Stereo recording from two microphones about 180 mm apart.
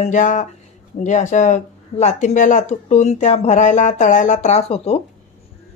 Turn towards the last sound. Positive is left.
turn(degrees=35)  # may be behind; listen again after turning